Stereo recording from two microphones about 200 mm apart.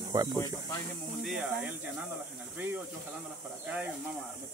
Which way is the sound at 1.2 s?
5° right (ahead or behind).